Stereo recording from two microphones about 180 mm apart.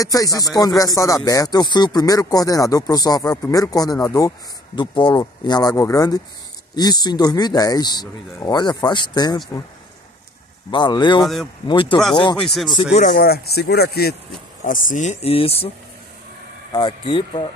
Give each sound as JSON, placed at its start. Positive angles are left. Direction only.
{"t": 0.0, "sound": "speech", "side_deg": 20}
{"t": 10.7, "sound": "speech", "side_deg": 25}
{"t": 12.4, "sound": "speech", "side_deg": 0}
{"t": 13.1, "sound": "speech", "side_deg": 60}
{"t": 14.6, "sound": "speech", "side_deg": 45}
{"t": 16.7, "sound": "speech", "side_deg": 25}